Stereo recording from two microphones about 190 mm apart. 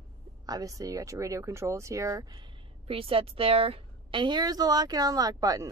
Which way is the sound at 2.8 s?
30° right (ahead or behind).